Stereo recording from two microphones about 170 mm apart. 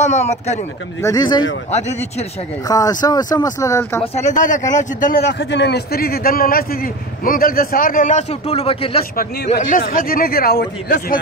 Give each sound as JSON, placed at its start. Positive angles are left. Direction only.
{"t": 0.0, "sound": "speech", "side_deg": 40}
{"t": 1.0, "sound": "speech", "side_deg": 25}
{"t": 1.7, "sound": "speech", "side_deg": 40}
{"t": 2.7, "sound": "speech", "side_deg": 20}
{"t": 4.0, "sound": "speech", "side_deg": 40}
{"t": 5.2, "sound": "a man's voice", "side_deg": 90}
{"t": 9.1, "sound": "a man's voice", "side_deg": 60}